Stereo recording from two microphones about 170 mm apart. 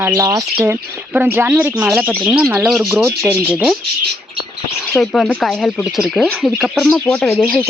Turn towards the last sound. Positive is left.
turn(degrees=10)  # may be behind; listen again after turning